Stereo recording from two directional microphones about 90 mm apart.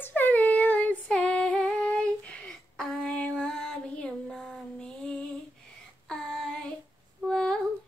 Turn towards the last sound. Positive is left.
turn(degrees=5)  # may be behind; listen again after turning